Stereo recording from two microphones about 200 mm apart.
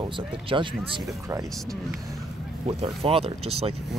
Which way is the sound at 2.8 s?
30° right (ahead or behind).